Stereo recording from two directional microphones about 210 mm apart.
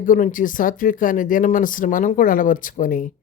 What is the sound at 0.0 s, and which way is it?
Speech, 40° left (ahead or behind).